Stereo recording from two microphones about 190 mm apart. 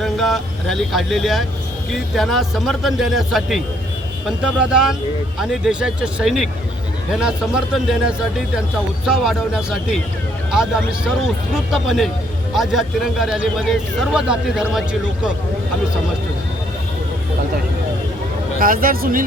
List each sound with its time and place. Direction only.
0.0 s speech: centre (ahead or behind)
18.6 s speech: 50° right (ahead or behind)